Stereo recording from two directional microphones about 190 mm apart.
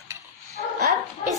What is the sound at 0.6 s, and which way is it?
Dog, 50° left (ahead or behind).